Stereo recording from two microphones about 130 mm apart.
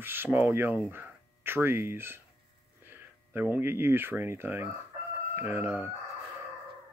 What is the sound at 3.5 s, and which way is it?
Speech, 15° right (ahead or behind).